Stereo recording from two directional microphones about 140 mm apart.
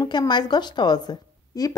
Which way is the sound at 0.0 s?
30° left (ahead or behind).